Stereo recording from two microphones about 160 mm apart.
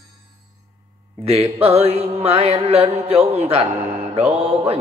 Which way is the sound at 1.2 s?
40° right (ahead or behind).